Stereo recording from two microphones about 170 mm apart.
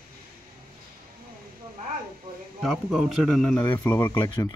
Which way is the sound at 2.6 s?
Centre (ahead or behind).